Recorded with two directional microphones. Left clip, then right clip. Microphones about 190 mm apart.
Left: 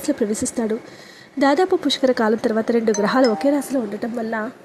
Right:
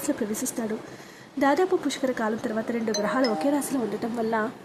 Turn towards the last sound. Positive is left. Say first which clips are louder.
# left 2 dB
turn(degrees=20)  # may be behind; listen again after turning